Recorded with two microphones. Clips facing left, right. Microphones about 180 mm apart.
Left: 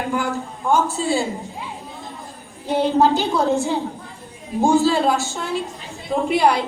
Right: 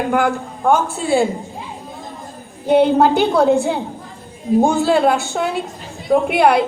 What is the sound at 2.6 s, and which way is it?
A woman's voice, 60° right (ahead or behind).